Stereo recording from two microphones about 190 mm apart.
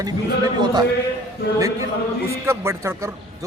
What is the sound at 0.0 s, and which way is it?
Speech, 20° right (ahead or behind).